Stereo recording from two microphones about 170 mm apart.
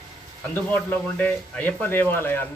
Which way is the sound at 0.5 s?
10° left (ahead or behind).